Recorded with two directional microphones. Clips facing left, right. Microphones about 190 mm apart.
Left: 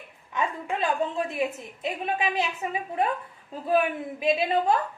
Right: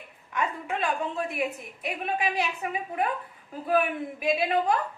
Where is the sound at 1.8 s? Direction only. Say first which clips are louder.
Left 2 dB; 25° left (ahead or behind).